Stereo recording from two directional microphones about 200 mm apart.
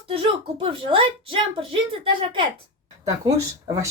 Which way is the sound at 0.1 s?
25° right (ahead or behind).